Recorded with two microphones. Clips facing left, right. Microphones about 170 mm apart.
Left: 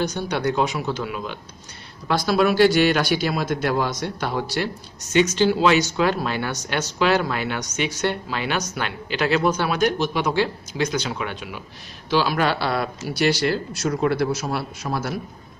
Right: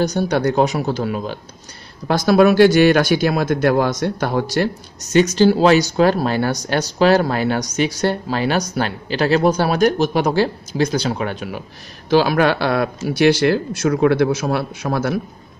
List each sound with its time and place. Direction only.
0.0 s speech: 40° right (ahead or behind); by 15.1 s 55° right (ahead or behind)